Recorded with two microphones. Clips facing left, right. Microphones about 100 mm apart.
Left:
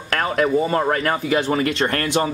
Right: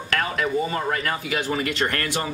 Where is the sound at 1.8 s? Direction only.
25° left (ahead or behind).